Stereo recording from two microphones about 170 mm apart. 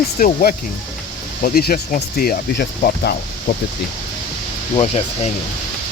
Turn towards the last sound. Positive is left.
turn(degrees=40)  # may be behind; listen again after turning